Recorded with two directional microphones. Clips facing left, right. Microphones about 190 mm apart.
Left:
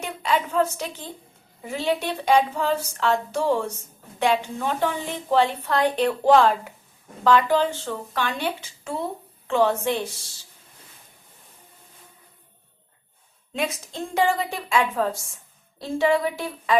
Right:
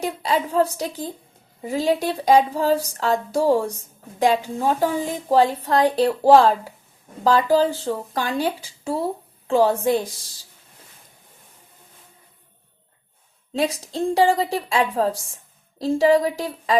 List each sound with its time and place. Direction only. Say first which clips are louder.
0.0 s a woman's voice: right 2 dB; 35° right (ahead or behind)
13.5 s a woman's voice: right 5 dB; 35° right (ahead or behind)